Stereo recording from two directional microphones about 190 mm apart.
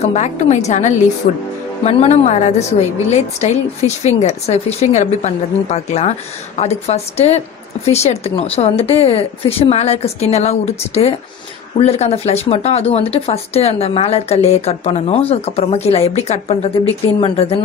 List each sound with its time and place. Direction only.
0.0 s a woman's voice: 35° left (ahead or behind)